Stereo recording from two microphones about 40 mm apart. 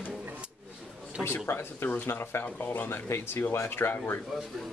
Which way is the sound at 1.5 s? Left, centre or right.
Left.